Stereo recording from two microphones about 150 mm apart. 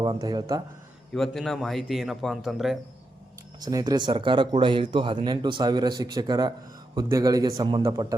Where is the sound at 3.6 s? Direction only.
25° right (ahead or behind).